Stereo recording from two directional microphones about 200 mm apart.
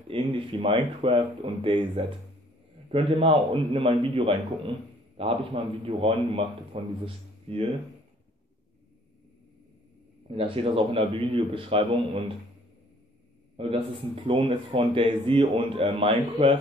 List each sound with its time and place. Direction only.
0.1 s a man's voice: 25° right (ahead or behind)
10.2 s a man's voice: 25° right (ahead or behind)
13.6 s a man's voice: 25° right (ahead or behind)